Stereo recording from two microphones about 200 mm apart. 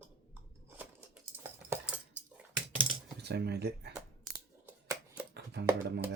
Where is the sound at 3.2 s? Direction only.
55° right (ahead or behind).